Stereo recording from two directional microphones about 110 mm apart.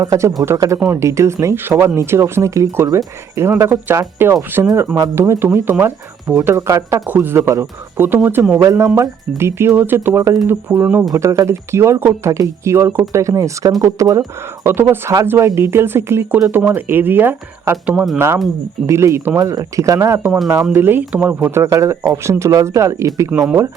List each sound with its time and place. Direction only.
0.0 s speech: 30° right (ahead or behind)
6.2 s speech: 10° right (ahead or behind)
6.5 s speech: 30° right (ahead or behind)
11.1 s speech: 30° right (ahead or behind)
17.9 s speech: centre (ahead or behind)
18.9 s speech: 25° right (ahead or behind)
21.6 s speech: 30° right (ahead or behind)